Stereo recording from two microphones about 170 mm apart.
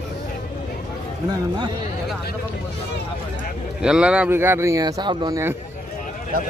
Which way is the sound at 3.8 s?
5° right (ahead or behind).